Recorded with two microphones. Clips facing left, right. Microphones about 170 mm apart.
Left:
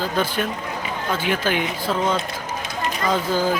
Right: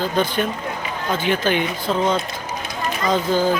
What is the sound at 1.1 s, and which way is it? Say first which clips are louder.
Speech: right 3 dB; 5° left (ahead or behind).